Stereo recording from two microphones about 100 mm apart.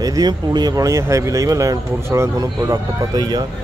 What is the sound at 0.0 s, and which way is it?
A man's voice, 40° right (ahead or behind).